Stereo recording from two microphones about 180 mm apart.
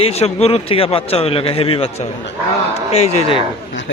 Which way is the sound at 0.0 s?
35° left (ahead or behind).